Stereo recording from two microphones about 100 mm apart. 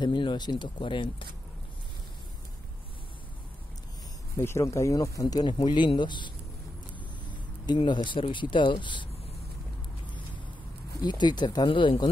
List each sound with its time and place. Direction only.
0.0 s speech: 50° left (ahead or behind)
4.4 s speech: 25° left (ahead or behind); by 9.1 s 55° left (ahead or behind)
11.0 s speech: 45° left (ahead or behind)